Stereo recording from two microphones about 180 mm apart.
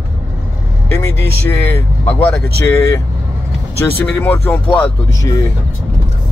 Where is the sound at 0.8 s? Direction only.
15° left (ahead or behind).